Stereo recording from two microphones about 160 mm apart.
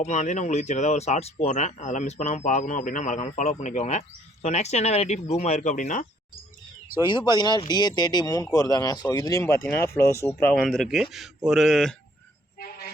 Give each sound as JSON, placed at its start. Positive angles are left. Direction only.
{"t": 0.0, "sound": "speech", "side_deg": 45}
{"t": 7.0, "sound": "speech", "side_deg": 30}
{"t": 12.5, "sound": "train", "side_deg": 70}